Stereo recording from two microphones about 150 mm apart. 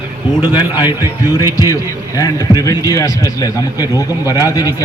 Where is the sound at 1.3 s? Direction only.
25° left (ahead or behind).